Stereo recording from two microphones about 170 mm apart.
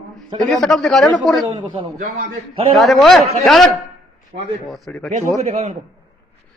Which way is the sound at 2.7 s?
Centre (ahead or behind).